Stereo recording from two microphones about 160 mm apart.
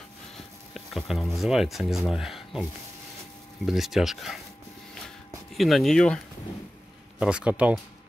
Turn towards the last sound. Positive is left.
turn(degrees=-5)  # may be behind; listen again after turning